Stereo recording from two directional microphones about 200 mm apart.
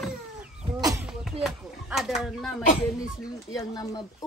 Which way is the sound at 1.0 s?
Centre (ahead or behind).